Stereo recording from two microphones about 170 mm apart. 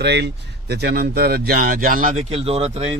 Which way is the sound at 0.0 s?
80° right.